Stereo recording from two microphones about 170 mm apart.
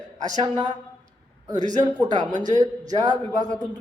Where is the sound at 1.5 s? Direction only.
45° right (ahead or behind).